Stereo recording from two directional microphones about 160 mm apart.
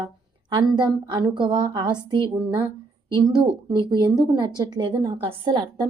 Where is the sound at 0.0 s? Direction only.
30° right (ahead or behind).